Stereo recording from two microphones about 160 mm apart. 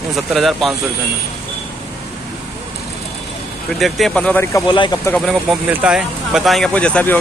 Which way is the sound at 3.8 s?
Centre (ahead or behind).